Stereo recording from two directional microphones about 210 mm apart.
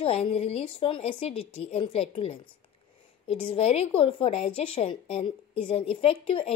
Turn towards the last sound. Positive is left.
turn(degrees=25)  # may be behind; listen again after turning